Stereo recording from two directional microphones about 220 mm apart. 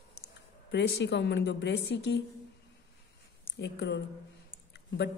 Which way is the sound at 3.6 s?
50° left (ahead or behind).